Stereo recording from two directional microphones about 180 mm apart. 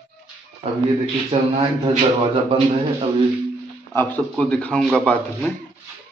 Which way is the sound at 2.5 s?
35° right (ahead or behind).